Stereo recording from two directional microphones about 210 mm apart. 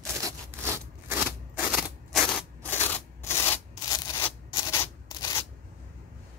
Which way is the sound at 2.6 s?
10° left (ahead or behind).